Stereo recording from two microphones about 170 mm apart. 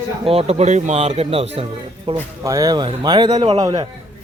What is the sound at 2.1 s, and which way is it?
Speech, 20° right (ahead or behind).